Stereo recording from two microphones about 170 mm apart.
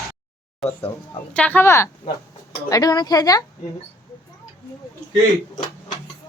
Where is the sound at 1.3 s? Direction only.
10° left (ahead or behind).